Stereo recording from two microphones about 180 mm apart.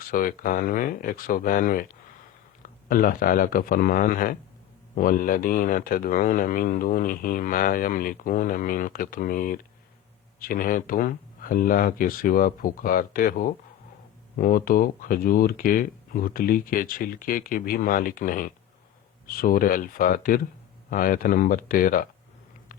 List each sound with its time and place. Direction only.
0.0 s speech: 50° left (ahead or behind)